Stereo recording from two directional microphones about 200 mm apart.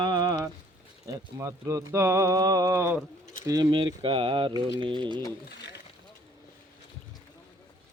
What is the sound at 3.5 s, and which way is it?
Speech, 20° right (ahead or behind).